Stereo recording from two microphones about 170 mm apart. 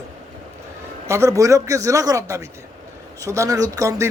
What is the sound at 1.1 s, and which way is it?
Speech, 15° right (ahead or behind).